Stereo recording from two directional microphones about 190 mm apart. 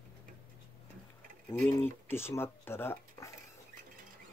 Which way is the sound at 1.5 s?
10° left (ahead or behind).